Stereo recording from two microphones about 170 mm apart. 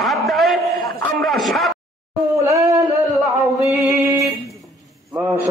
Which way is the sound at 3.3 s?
20° right (ahead or behind).